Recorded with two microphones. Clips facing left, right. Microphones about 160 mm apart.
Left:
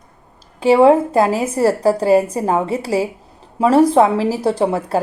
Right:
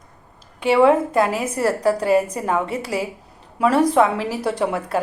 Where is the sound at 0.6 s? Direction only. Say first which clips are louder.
Left 4 dB; 35° left (ahead or behind).